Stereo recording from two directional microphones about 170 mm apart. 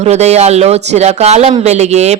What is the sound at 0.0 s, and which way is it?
Speech, 40° right (ahead or behind).